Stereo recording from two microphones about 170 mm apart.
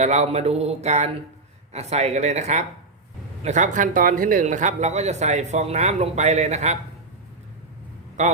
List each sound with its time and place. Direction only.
0.0 s mantra: 40° right (ahead or behind)
3.4 s speech: 45° right (ahead or behind)